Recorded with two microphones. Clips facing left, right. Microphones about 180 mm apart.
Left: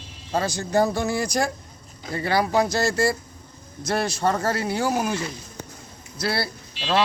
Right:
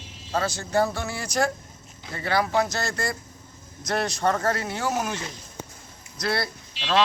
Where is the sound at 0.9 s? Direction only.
40° left (ahead or behind).